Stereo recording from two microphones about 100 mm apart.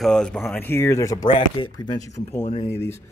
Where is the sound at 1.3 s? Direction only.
55° left (ahead or behind).